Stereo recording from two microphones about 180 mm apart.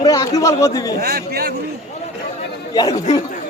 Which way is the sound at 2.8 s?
20° left (ahead or behind).